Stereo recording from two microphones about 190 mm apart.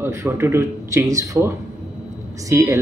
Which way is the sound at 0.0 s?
15° right (ahead or behind).